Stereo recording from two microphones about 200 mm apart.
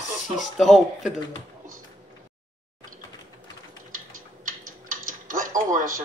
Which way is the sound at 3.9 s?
40° right (ahead or behind).